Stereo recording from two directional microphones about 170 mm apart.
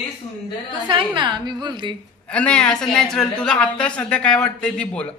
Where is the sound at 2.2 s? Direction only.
5° left (ahead or behind).